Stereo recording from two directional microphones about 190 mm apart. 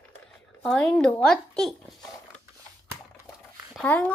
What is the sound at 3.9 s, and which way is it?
Speech, 10° left (ahead or behind).